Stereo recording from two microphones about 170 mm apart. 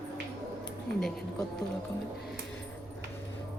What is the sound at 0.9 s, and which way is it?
Speech, 75° right (ahead or behind).